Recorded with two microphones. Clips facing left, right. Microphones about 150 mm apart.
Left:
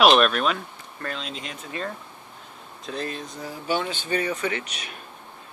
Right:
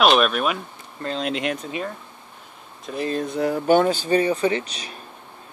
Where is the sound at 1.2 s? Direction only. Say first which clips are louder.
Right 11 dB; 65° right (ahead or behind).